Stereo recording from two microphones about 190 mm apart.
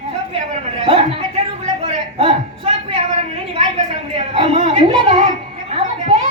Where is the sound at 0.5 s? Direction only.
30° right (ahead or behind).